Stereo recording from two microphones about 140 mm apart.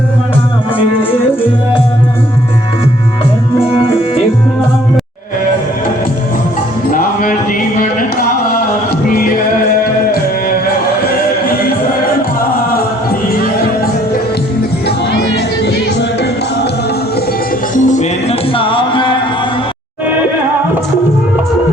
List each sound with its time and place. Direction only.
6.9 s music: 85° left
17.8 s music: 55° left (ahead or behind); by 19.1 s 35° left (ahead or behind)